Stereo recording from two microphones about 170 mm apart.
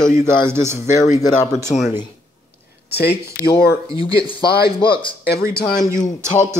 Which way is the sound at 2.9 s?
70° left (ahead or behind).